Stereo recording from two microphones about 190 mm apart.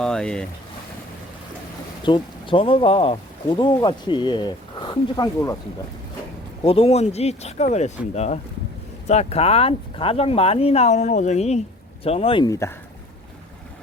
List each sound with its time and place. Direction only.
0.0 s speech: 5° left (ahead or behind)
2.0 s speech: 25° left (ahead or behind)
6.7 s speech: 30° left (ahead or behind)